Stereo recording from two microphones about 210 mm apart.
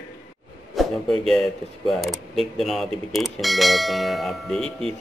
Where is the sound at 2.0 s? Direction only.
Centre (ahead or behind).